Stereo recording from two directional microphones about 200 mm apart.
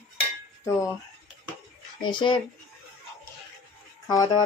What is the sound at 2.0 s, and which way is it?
Speech, 25° left (ahead or behind).